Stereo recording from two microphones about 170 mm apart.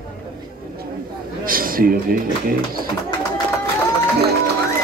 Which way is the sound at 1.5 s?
55° right (ahead or behind).